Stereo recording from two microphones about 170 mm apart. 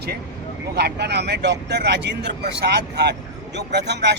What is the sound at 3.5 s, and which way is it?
Speech, 90° right.